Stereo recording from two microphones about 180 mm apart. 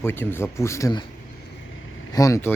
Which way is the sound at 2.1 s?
20° left (ahead or behind).